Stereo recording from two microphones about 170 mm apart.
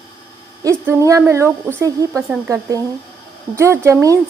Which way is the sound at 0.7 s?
20° right (ahead or behind).